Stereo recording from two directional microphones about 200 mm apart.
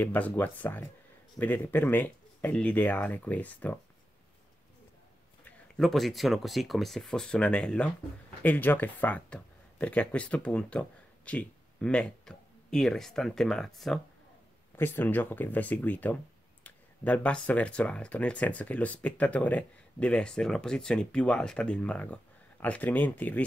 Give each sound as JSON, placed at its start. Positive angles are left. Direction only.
{"t": 0.0, "sound": "speech", "side_deg": 10}
{"t": 5.4, "sound": "speech", "side_deg": 0}